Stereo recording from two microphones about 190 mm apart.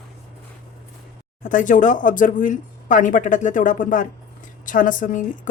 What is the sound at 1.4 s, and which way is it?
Speech, 40° left (ahead or behind).